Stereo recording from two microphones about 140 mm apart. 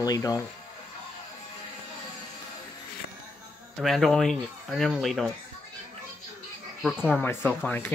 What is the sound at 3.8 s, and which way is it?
Speech, centre (ahead or behind).